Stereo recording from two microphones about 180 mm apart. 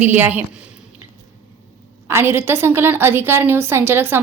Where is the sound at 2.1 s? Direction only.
15° right (ahead or behind).